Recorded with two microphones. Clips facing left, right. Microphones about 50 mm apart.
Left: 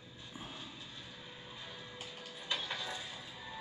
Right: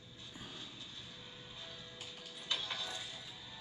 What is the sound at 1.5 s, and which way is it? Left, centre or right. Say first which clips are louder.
Music: left 3 dB; left.